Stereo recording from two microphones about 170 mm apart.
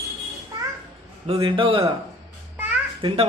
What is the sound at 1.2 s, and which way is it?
Speech, 30° right (ahead or behind).